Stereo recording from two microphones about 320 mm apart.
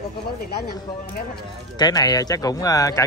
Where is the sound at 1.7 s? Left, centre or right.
Centre.